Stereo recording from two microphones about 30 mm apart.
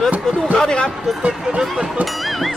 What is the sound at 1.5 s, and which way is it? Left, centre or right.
Speech, right.